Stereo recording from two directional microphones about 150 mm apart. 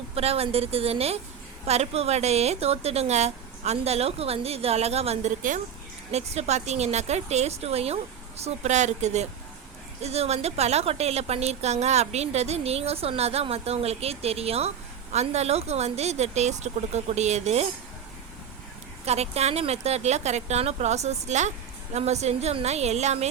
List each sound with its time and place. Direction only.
0.2 s a woman's voice: 40° right (ahead or behind)
19.0 s a woman's voice: 45° right (ahead or behind)